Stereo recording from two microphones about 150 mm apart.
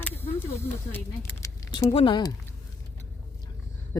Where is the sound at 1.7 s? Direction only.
35° left (ahead or behind).